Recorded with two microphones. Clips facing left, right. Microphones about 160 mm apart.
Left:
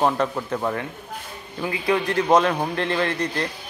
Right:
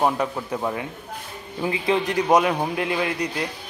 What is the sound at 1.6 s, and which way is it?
A man's voice, 20° right (ahead or behind).